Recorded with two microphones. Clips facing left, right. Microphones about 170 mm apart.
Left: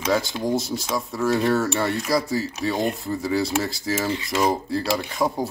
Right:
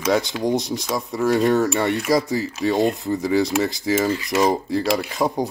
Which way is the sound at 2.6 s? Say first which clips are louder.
Right 6 dB; 20° right (ahead or behind).